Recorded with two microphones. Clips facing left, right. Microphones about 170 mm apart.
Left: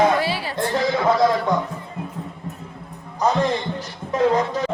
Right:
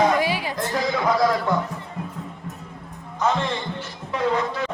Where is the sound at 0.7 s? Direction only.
25° left (ahead or behind).